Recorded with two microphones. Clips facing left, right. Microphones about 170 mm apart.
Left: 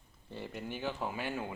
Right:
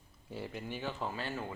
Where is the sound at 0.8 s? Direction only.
10° left (ahead or behind).